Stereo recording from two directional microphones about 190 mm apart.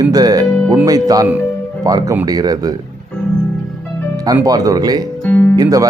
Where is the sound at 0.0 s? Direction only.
20° right (ahead or behind).